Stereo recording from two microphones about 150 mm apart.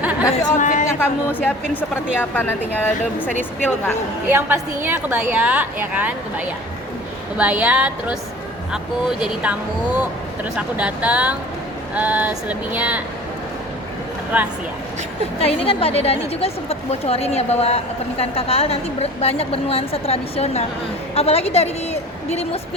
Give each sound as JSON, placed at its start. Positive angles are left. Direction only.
{"t": 0.0, "sound": "chatter", "side_deg": -10}
{"t": 0.5, "sound": "speech", "side_deg": 55}
{"t": 0.9, "sound": "a woman's voice", "side_deg": 10}
{"t": 4.3, "sound": "a woman's voice", "side_deg": -15}
{"t": 14.3, "sound": "a woman's voice", "side_deg": -10}
{"t": 15.4, "sound": "a woman's voice", "side_deg": 40}